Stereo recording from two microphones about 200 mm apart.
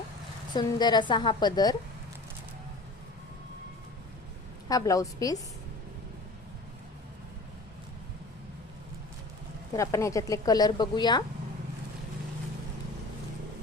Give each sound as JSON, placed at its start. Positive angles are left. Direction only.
{"t": 0.5, "sound": "a woman's voice", "side_deg": 20}
{"t": 4.7, "sound": "a woman's voice", "side_deg": 15}
{"t": 9.7, "sound": "a woman's voice", "side_deg": 15}